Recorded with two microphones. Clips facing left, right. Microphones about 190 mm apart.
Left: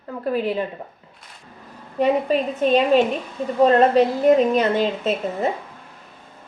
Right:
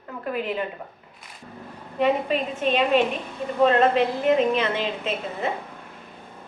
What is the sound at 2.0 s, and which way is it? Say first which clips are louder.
A woman's voice: left 3 dB; 40° left (ahead or behind).